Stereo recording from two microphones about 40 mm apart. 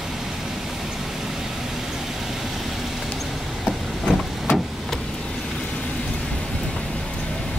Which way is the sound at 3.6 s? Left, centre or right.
Centre.